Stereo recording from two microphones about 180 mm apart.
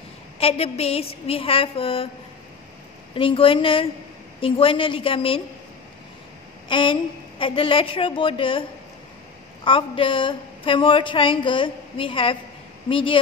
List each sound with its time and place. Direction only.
0.4 s a woman's voice: 35° left (ahead or behind)
3.2 s a woman's voice: 30° left (ahead or behind)
6.7 s a woman's voice: 30° left (ahead or behind)
9.7 s a woman's voice: 30° left (ahead or behind)